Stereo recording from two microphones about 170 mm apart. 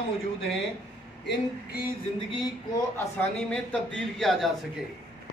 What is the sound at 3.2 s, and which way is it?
A man's voice, 5° left (ahead or behind).